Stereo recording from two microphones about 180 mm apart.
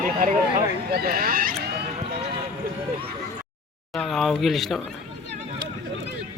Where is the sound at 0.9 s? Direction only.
60° right (ahead or behind).